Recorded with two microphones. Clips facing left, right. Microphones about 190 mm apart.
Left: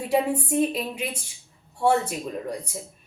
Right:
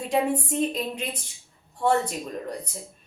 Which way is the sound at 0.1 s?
10° left (ahead or behind).